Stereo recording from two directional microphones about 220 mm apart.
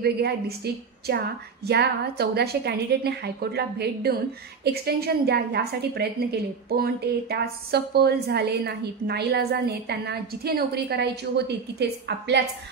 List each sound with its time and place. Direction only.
0.0 s a woman's voice: 45° right (ahead or behind)